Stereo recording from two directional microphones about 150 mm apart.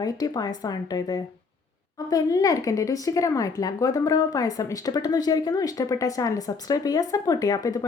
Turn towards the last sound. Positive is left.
turn(degrees=25)  # may be behind; listen again after turning